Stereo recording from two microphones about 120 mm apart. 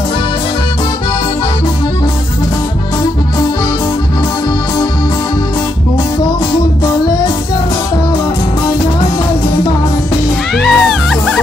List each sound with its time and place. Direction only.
10.6 s music: centre (ahead or behind)